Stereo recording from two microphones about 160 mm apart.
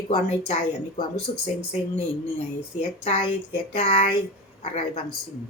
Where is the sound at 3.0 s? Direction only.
40° left (ahead or behind).